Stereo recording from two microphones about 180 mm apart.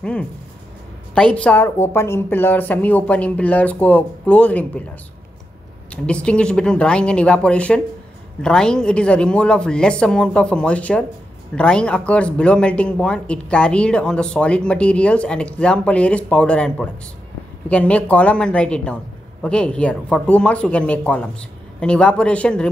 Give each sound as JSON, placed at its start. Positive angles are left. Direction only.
{"t": 1.1, "sound": "a woman's voice", "side_deg": 5}
{"t": 5.9, "sound": "a woman's voice", "side_deg": 5}